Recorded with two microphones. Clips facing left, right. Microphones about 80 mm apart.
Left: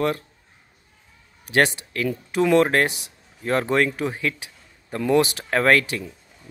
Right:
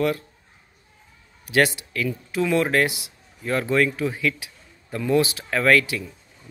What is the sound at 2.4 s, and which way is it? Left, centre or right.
Speech, left.